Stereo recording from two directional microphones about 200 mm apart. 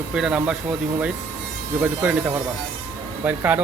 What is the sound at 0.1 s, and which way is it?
Speech, 5° right (ahead or behind).